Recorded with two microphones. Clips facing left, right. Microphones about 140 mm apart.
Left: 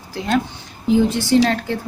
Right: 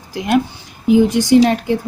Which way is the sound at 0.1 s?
15° right (ahead or behind).